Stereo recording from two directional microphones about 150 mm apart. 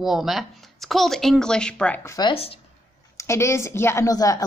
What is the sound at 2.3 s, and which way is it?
Speech, 40° left (ahead or behind).